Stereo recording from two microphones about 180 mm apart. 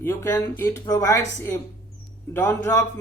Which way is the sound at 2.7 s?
20° left (ahead or behind).